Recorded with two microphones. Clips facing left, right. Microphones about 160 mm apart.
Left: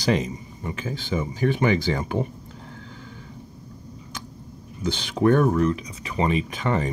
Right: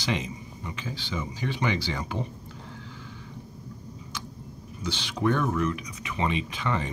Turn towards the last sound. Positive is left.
turn(degrees=45)  # may be behind; listen again after turning